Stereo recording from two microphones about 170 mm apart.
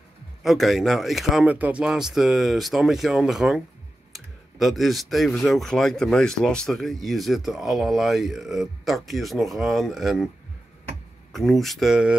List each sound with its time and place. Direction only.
0.4 s speech: centre (ahead or behind)
11.3 s speech: centre (ahead or behind)